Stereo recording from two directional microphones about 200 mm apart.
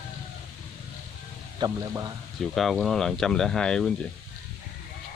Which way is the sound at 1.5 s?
20° right (ahead or behind).